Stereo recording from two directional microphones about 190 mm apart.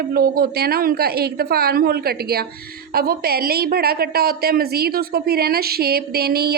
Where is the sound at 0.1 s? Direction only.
50° right (ahead or behind).